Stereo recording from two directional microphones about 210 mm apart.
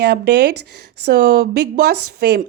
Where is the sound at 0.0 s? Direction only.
50° right (ahead or behind).